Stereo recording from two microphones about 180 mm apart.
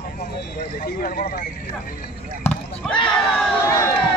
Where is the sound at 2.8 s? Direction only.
5° left (ahead or behind).